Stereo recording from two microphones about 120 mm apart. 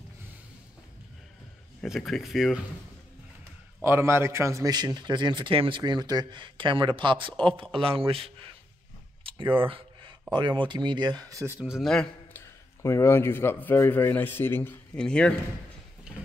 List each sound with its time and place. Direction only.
1.9 s speech: centre (ahead or behind)
3.8 s a man's voice: 20° right (ahead or behind)
4.7 s speech: 35° right (ahead or behind)
9.2 s a sound: 45° right (ahead or behind)
10.3 s speech: 40° right (ahead or behind); by 11.7 s 20° right (ahead or behind)
11.7 s speech: 5° left (ahead or behind)
12.4 s a man's voice: 20° left (ahead or behind)